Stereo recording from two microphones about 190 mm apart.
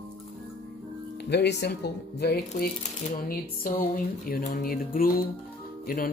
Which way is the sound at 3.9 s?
50° left (ahead or behind).